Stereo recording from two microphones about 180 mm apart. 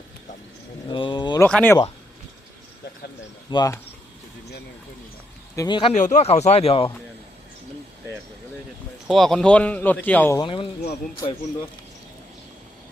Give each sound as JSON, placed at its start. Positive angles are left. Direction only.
{"t": 0.9, "sound": "speech", "side_deg": 25}
{"t": 1.4, "sound": "speech", "side_deg": 10}
{"t": 3.5, "sound": "speech", "side_deg": 20}
{"t": 5.5, "sound": "speech", "side_deg": 25}
{"t": 5.9, "sound": "speech", "side_deg": 40}
{"t": 9.0, "sound": "speech", "side_deg": 0}
{"t": 10.4, "sound": "speech", "side_deg": 30}